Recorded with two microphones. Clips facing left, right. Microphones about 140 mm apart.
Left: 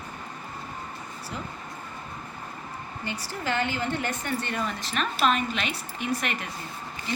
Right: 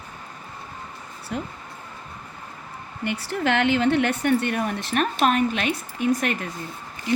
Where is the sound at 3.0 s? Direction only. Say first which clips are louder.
Right 8 dB; 65° right (ahead or behind); by 6.4 s 45° right (ahead or behind).